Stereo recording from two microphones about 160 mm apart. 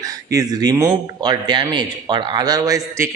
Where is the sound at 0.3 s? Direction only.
20° right (ahead or behind).